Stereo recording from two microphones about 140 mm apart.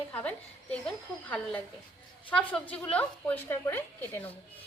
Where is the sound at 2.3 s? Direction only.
10° left (ahead or behind).